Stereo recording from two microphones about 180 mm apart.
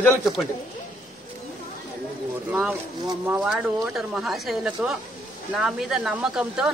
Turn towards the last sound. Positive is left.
turn(degrees=-5)  # may be behind; listen again after turning